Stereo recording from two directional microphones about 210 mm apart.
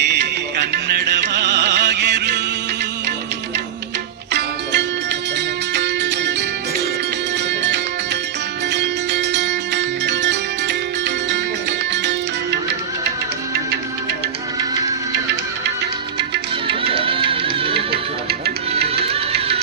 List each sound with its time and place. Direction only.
0.0 s music: 55° right (ahead or behind)
4.3 s music: 55° right (ahead or behind)
7.6 s music: 55° right (ahead or behind)
16.6 s music: 25° right (ahead or behind)
17.7 s music: 50° right (ahead or behind)
19.0 s music: 30° right (ahead or behind)